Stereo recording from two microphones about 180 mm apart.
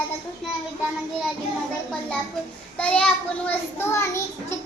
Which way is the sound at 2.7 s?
5° left (ahead or behind).